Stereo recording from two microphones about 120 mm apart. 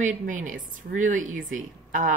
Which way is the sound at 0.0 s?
90° right.